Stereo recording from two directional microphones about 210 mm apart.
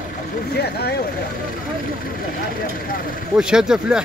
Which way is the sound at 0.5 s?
50° left (ahead or behind).